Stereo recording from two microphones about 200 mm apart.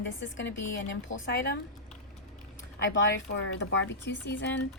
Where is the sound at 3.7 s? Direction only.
65° left (ahead or behind).